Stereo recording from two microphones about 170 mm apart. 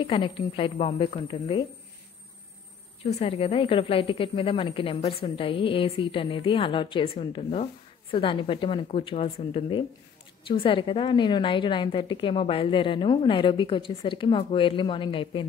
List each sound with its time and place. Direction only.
0.0 s a woman's voice: 30° left (ahead or behind)
3.1 s a woman's voice: 35° left (ahead or behind)